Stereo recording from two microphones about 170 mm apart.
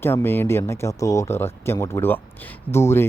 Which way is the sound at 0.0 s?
15° left (ahead or behind).